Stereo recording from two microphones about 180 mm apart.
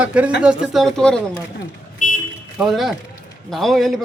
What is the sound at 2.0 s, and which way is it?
Vehicle, 45° left (ahead or behind).